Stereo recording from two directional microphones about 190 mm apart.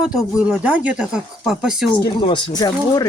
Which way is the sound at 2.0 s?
20° left (ahead or behind).